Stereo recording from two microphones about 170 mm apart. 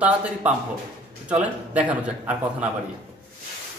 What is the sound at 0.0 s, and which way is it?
A man's voice, 5° right (ahead or behind).